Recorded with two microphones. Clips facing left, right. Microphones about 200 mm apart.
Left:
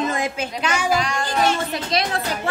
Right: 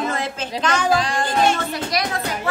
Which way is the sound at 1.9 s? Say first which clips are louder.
Left 3 dB; 30° left (ahead or behind).